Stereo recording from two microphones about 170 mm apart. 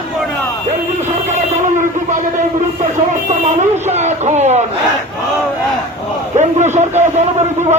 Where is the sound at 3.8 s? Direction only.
40° right (ahead or behind).